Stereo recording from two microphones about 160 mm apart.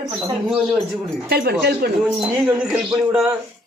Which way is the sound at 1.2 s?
80° right.